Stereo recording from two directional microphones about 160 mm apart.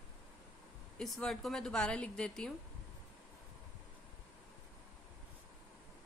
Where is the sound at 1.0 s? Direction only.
5° left (ahead or behind).